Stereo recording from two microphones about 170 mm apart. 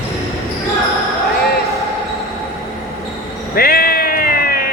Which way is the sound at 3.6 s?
60° left (ahead or behind).